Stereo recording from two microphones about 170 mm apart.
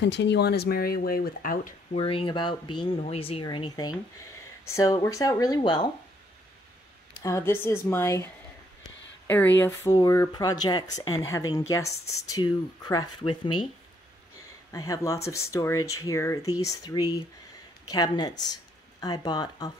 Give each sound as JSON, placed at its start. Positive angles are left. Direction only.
{"t": 0.0, "sound": "speech", "side_deg": 90}
{"t": 2.0, "sound": "speech", "side_deg": 30}
{"t": 7.2, "sound": "speech", "side_deg": 20}
{"t": 9.3, "sound": "speech", "side_deg": 10}
{"t": 14.7, "sound": "speech", "side_deg": 20}